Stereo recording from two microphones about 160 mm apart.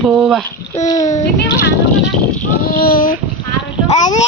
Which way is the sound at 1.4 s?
90° left.